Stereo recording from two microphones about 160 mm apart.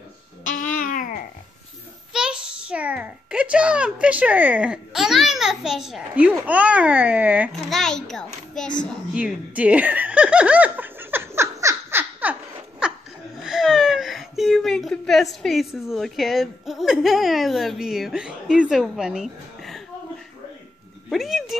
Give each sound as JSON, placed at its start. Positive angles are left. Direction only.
{"t": 0.4, "sound": "babbling", "side_deg": 55}
{"t": 2.1, "sound": "a child's voice", "side_deg": -5}
{"t": 7.7, "sound": "speech", "side_deg": 5}
{"t": 9.1, "sound": "snicker", "side_deg": -10}
{"t": 12.8, "sound": "laughter", "side_deg": -5}
{"t": 13.4, "sound": "whimper", "side_deg": 0}
{"t": 15.4, "sound": "speech", "side_deg": 0}
{"t": 21.1, "sound": "speech", "side_deg": 0}